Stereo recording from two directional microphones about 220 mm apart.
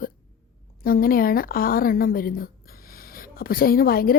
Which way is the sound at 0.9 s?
40° left (ahead or behind).